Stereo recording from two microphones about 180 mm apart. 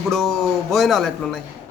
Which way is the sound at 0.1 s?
Centre (ahead or behind).